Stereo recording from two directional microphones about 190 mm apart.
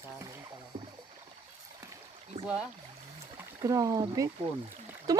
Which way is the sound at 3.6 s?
15° right (ahead or behind).